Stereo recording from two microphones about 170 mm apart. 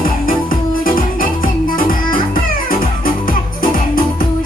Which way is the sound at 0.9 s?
55° left (ahead or behind).